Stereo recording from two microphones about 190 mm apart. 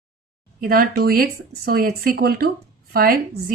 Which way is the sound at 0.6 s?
50° right (ahead or behind).